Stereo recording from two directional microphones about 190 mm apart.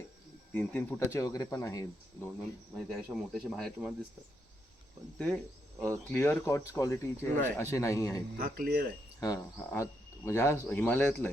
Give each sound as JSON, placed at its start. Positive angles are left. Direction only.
{"t": 0.5, "sound": "speech", "side_deg": 10}
{"t": 2.7, "sound": "speech", "side_deg": 0}
{"t": 5.1, "sound": "speech", "side_deg": 5}
{"t": 8.4, "sound": "speech", "side_deg": -50}
{"t": 9.2, "sound": "speech", "side_deg": 20}